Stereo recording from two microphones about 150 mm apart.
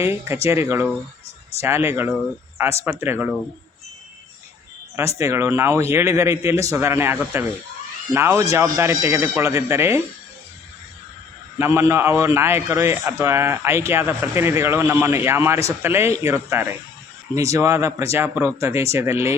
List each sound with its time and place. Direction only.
0.0 s a man's voice: 15° right (ahead or behind)
4.9 s a man's voice: 20° right (ahead or behind)
11.6 s a man's voice: 15° right (ahead or behind)